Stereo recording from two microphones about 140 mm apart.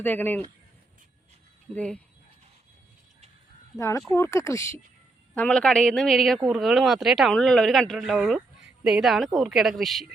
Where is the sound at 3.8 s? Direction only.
20° left (ahead or behind).